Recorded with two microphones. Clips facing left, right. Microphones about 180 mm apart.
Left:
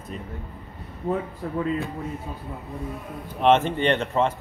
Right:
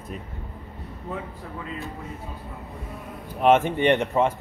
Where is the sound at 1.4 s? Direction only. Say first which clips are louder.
Left 8 dB; 45° left (ahead or behind).